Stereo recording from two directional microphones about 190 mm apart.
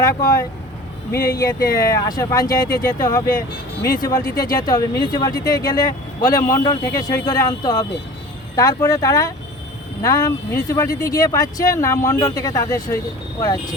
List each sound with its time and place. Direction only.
0.0 s speech: 20° left (ahead or behind)